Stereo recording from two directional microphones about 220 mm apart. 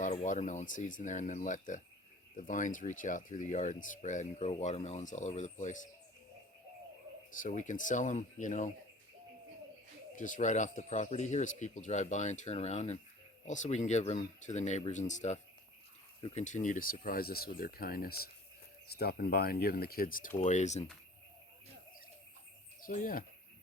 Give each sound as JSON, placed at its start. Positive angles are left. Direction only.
{"t": 0.0, "sound": "speech", "side_deg": 35}
{"t": 7.3, "sound": "speech", "side_deg": 35}
{"t": 10.2, "sound": "speech", "side_deg": 35}
{"t": 22.9, "sound": "speech", "side_deg": 40}